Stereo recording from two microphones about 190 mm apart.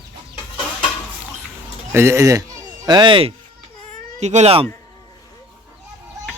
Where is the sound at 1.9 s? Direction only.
15° right (ahead or behind); by 4.6 s 35° right (ahead or behind).